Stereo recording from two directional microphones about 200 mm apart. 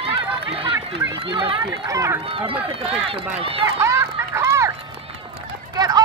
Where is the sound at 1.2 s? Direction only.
25° right (ahead or behind).